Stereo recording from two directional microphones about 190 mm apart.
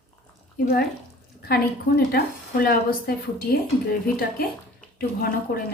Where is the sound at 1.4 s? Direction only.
55° left (ahead or behind).